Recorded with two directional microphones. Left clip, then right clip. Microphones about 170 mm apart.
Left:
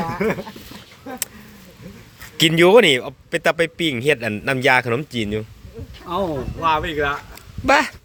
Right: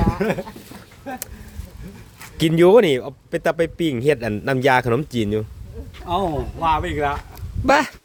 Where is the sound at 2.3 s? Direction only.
20° right (ahead or behind); by 5.4 s 40° right (ahead or behind).